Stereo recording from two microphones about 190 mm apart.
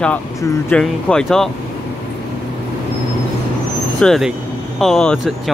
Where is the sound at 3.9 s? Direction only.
Centre (ahead or behind).